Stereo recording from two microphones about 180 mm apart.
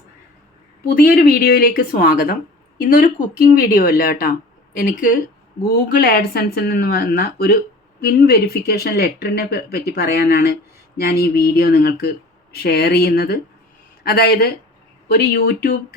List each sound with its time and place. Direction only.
0.9 s speech: 55° left (ahead or behind)
5.6 s speech: 55° left (ahead or behind)